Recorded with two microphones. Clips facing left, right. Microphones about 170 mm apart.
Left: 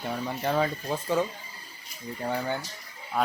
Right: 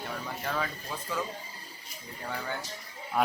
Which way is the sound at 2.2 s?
35° left (ahead or behind).